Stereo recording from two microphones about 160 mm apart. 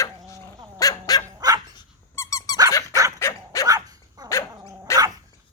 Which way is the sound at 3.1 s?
20° left (ahead or behind).